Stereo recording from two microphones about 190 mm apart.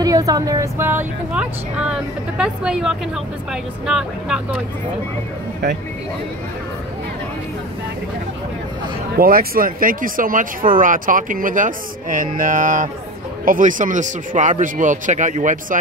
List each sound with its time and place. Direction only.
0.0 s speech: 20° right (ahead or behind); by 4.6 s 5° right (ahead or behind)
9.1 s speech: 50° right (ahead or behind)